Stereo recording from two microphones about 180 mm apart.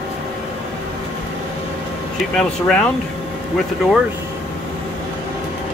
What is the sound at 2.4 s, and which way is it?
Speech, 5° left (ahead or behind).